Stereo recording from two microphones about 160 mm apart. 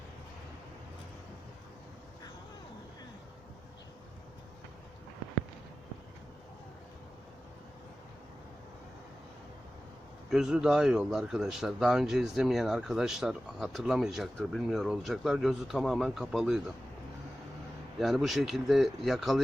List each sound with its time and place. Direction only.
10.2 s speech: 5° right (ahead or behind)
18.0 s speech: centre (ahead or behind)